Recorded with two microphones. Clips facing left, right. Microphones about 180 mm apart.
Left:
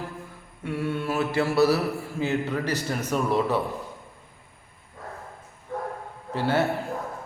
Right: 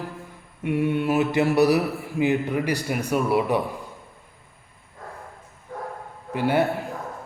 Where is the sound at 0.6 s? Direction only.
15° right (ahead or behind).